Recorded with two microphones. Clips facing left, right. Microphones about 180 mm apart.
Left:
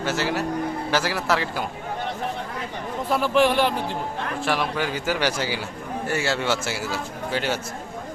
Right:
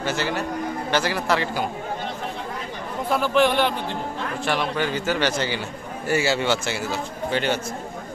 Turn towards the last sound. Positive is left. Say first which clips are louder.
# right 2 dB
turn(degrees=5)  # may be behind; listen again after turning